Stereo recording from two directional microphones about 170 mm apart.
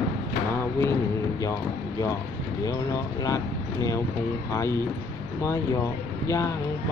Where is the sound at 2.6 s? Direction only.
20° left (ahead or behind).